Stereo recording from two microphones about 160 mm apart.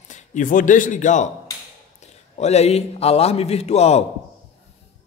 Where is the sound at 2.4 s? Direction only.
45° left (ahead or behind).